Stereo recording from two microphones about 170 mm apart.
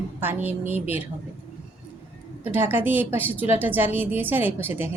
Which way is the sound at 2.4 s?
10° right (ahead or behind).